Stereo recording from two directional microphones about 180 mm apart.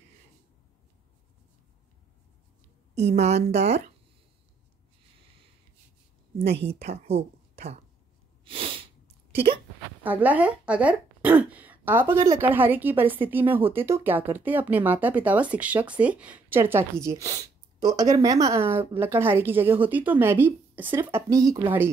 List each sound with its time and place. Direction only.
2.9 s a woman's voice: 35° right (ahead or behind)
6.4 s a woman's voice: 35° right (ahead or behind)
8.5 s sneeze: 30° right (ahead or behind)
10.0 s a woman's voice: 10° right (ahead or behind)